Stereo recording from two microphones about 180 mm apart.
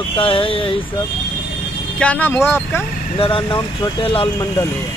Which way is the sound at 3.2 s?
30° left (ahead or behind).